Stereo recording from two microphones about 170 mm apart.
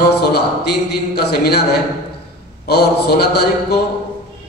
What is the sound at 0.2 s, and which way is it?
A man's voice, 70° left (ahead or behind).